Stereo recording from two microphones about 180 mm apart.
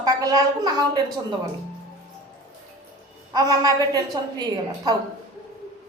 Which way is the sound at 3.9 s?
20° right (ahead or behind).